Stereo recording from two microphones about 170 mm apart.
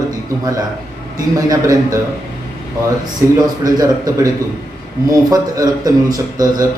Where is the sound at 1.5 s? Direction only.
20° right (ahead or behind).